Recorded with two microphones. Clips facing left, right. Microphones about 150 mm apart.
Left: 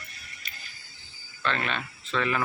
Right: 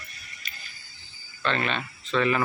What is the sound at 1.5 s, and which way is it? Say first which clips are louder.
Speech: right 3 dB; 5° left (ahead or behind).